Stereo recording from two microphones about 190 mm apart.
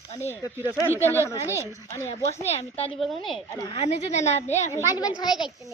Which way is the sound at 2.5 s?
30° left (ahead or behind).